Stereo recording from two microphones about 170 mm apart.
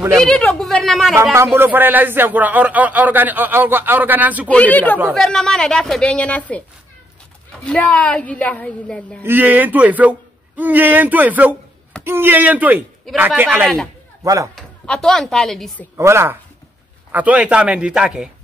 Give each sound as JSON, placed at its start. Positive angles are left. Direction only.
{"t": 0.2, "sound": "a woman's voice", "side_deg": 5}
{"t": 1.3, "sound": "speech", "side_deg": -15}
{"t": 4.5, "sound": "a woman's voice", "side_deg": 10}
{"t": 7.6, "sound": "speech", "side_deg": 5}
{"t": 9.2, "sound": "speech", "side_deg": -10}
{"t": 14.5, "sound": "a woman's voice", "side_deg": 5}
{"t": 16.0, "sound": "speech", "side_deg": -15}